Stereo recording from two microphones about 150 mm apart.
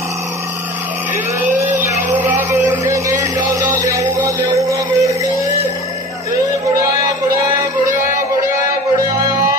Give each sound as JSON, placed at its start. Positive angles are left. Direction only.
{"t": 1.4, "sound": "a sound", "side_deg": -15}
{"t": 3.4, "sound": "music", "side_deg": -20}
{"t": 8.5, "sound": "music", "side_deg": -20}